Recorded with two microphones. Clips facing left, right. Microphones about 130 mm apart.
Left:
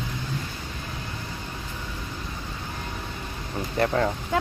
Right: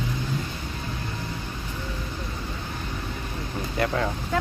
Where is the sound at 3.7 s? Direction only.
35° left (ahead or behind).